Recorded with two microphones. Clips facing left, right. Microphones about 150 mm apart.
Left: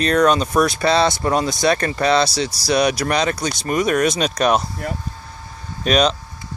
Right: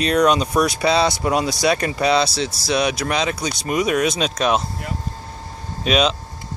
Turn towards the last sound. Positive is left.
turn(degrees=-5)  # may be behind; listen again after turning